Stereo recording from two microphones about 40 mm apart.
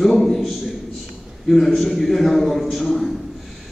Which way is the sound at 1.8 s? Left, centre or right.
Centre.